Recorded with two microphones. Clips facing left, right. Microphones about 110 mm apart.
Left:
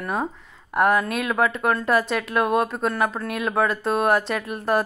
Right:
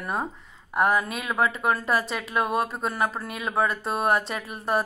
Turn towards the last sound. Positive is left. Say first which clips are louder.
# left 4 dB
turn(degrees=0)  # may be behind; listen again after turning